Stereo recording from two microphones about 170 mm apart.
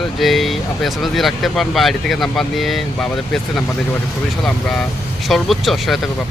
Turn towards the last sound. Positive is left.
turn(degrees=0)  # may be behind; listen again after turning